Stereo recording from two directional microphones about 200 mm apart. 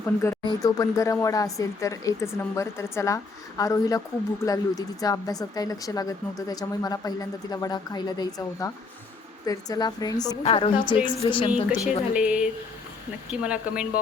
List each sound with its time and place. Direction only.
0.0 s a woman's voice: 10° left (ahead or behind)
11.5 s speech: 5° right (ahead or behind)